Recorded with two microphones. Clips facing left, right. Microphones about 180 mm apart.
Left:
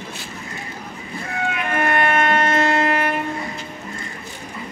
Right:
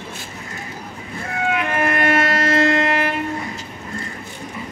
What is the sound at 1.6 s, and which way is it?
Music, 90° right.